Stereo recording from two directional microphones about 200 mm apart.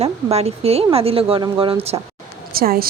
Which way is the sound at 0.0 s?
30° right (ahead or behind).